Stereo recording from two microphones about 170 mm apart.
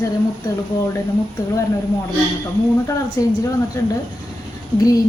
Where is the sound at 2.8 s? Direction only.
20° left (ahead or behind).